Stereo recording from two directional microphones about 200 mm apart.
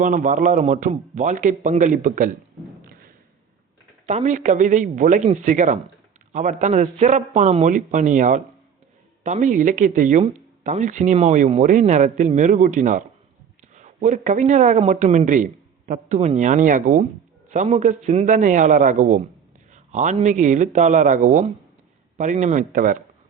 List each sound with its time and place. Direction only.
0.0 s speech: 40° right (ahead or behind)
2.8 s thump: 50° right (ahead or behind)
4.0 s speech: 35° right (ahead or behind)